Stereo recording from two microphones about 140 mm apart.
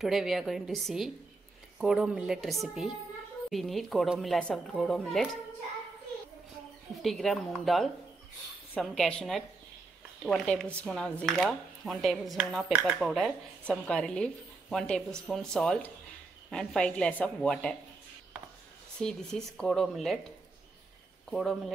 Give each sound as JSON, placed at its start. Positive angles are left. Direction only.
{"t": 0.0, "sound": "a woman's voice", "side_deg": 0}
{"t": 7.0, "sound": "a woman's voice", "side_deg": 0}
{"t": 18.9, "sound": "a woman's voice", "side_deg": 5}
{"t": 21.3, "sound": "a woman's voice", "side_deg": 0}